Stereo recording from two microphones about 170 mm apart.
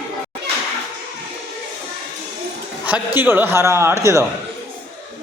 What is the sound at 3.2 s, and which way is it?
A man's voice, 10° right (ahead or behind).